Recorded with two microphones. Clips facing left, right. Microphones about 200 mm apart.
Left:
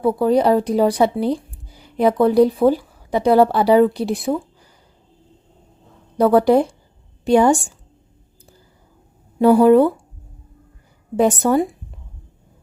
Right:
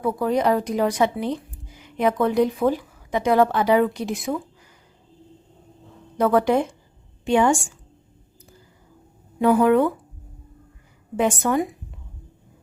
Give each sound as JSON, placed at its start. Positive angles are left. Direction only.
{"t": 0.0, "sound": "a woman's voice", "side_deg": 30}
{"t": 6.1, "sound": "a woman's voice", "side_deg": 35}
{"t": 9.4, "sound": "a woman's voice", "side_deg": 35}
{"t": 11.2, "sound": "a woman's voice", "side_deg": 35}